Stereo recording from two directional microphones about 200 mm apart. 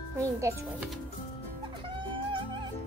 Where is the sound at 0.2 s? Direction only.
15° right (ahead or behind).